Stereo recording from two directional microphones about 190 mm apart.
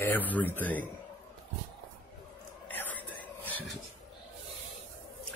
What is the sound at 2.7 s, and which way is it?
Whispering, 10° left (ahead or behind).